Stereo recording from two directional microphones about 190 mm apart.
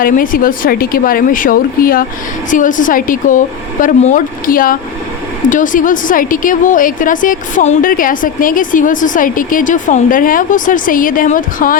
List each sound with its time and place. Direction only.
0.0 s a woman's voice: 45° left (ahead or behind)